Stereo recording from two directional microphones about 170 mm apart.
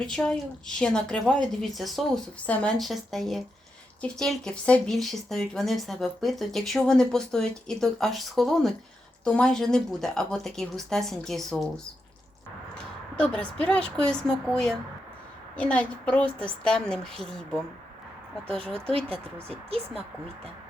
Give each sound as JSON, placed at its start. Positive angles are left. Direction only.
{"t": 0.0, "sound": "speech", "side_deg": 5}
{"t": 12.7, "sound": "speech", "side_deg": 5}
{"t": 18.5, "sound": "speech", "side_deg": -35}